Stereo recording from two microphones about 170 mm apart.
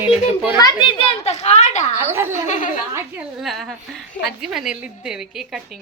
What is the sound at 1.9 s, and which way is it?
A woman's voice, 15° right (ahead or behind).